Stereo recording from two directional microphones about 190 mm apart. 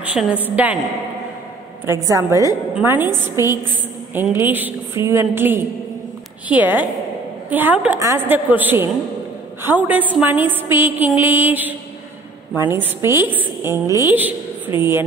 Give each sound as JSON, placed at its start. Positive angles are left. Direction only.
{"t": 0.0, "sound": "a woman's voice", "side_deg": -5}
{"t": 2.0, "sound": "a woman's voice", "side_deg": -15}